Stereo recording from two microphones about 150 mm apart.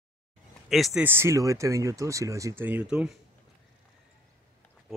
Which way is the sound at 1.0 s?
15° right (ahead or behind).